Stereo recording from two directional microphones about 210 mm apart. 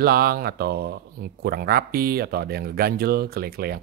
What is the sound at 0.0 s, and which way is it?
Speech, 50° right (ahead or behind).